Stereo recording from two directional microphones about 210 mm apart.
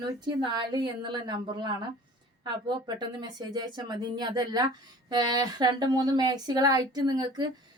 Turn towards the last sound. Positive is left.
turn(degrees=-20)  # may be behind; listen again after turning